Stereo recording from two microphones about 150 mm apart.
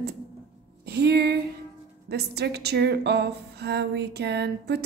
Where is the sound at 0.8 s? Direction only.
90° right.